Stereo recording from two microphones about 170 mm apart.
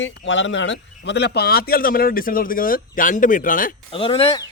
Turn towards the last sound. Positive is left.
turn(degrees=30)  # may be behind; listen again after turning